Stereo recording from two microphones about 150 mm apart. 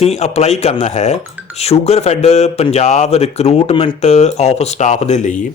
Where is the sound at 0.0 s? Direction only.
45° left (ahead or behind).